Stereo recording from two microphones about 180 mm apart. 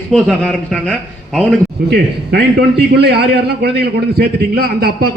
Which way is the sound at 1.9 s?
65° right (ahead or behind).